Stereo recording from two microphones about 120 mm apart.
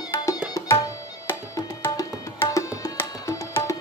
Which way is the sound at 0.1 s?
25° left (ahead or behind).